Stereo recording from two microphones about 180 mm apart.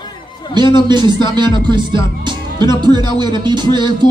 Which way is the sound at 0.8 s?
25° right (ahead or behind).